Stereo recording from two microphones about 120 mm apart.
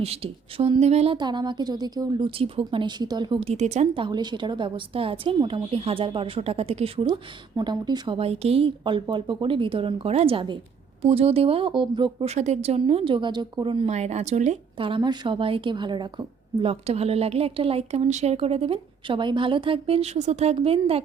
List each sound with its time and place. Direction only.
0.0 s a woman's voice: 55° right (ahead or behind)
1.1 s a woman's voice: 40° right (ahead or behind)
3.4 s a woman's voice: 65° right (ahead or behind)
3.9 s a woman's voice: 40° right (ahead or behind)
7.1 s a woman's voice: 35° right (ahead or behind)
11.0 s a woman's voice: 55° right (ahead or behind)
12.2 s a woman's voice: 65° right (ahead or behind)
13.1 s a woman's voice: 40° right (ahead or behind)
13.8 s speech: 65° right (ahead or behind)
14.8 s a woman's voice: 45° right (ahead or behind)